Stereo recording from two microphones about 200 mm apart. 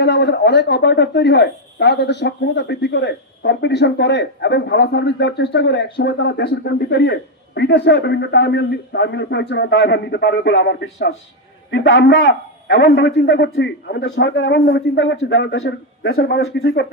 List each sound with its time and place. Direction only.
0.0 s speech: 60° left (ahead or behind)
16.1 s speech: 55° left (ahead or behind)